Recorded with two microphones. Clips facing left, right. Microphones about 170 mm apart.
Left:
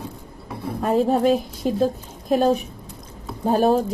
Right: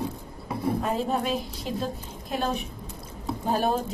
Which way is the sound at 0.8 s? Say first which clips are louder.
Left 8 dB; 45° left (ahead or behind).